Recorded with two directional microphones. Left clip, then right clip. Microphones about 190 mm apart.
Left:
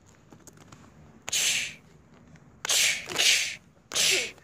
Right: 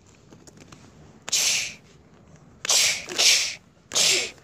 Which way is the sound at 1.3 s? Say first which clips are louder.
Right 3 dB; 5° right (ahead or behind).